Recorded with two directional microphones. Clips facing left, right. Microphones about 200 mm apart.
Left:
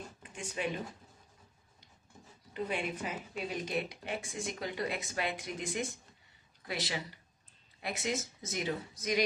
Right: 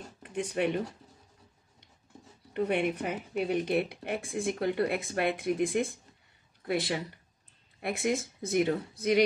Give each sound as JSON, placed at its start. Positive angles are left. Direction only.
{"t": 0.2, "sound": "speech", "side_deg": -60}
{"t": 2.5, "sound": "a woman's voice", "side_deg": -60}